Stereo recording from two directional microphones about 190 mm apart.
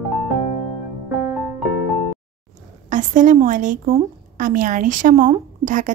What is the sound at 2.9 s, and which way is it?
A woman's voice, 40° right (ahead or behind).